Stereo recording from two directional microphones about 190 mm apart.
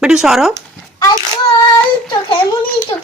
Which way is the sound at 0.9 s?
20° left (ahead or behind).